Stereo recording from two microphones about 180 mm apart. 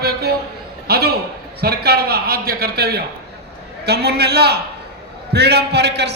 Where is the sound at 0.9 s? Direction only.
60° right (ahead or behind).